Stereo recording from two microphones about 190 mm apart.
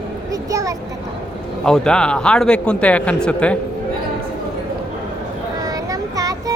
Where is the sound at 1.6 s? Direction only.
5° left (ahead or behind).